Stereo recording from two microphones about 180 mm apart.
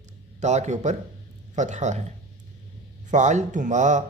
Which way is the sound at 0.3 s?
40° right (ahead or behind).